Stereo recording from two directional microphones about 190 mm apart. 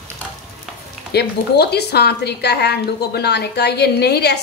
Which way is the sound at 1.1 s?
60° left (ahead or behind).